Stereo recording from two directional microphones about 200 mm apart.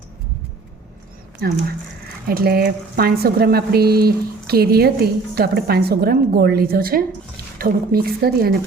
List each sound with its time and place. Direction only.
1.4 s speech: 50° right (ahead or behind)